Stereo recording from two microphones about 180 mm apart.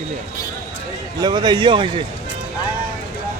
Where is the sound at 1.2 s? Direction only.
25° right (ahead or behind).